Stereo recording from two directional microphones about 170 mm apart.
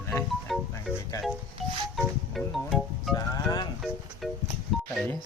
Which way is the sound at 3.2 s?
25° left (ahead or behind).